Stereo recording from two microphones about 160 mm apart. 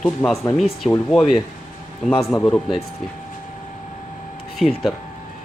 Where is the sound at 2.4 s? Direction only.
5° left (ahead or behind).